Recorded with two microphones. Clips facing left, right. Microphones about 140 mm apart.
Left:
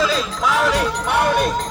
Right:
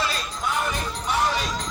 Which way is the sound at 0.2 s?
90° left.